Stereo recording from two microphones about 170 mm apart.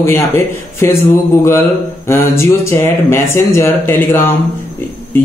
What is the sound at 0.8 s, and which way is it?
Speech, 15° left (ahead or behind).